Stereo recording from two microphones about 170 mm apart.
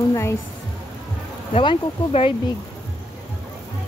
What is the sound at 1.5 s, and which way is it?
Speech, 35° left (ahead or behind).